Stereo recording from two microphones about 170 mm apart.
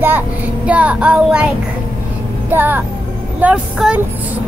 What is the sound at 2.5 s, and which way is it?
Child singing, 10° right (ahead or behind).